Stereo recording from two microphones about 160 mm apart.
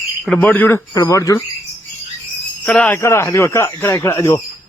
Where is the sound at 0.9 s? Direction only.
20° left (ahead or behind).